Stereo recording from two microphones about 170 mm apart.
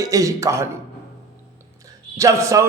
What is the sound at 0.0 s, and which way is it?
Speech, 20° right (ahead or behind).